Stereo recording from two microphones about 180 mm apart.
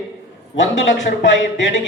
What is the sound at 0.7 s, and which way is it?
Music, 85° left.